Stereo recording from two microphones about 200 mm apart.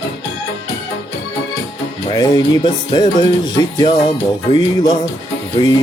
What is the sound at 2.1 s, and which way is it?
Music, 20° left (ahead or behind).